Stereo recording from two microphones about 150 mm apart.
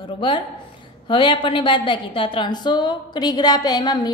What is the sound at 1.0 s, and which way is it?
A woman's voice, 35° left (ahead or behind).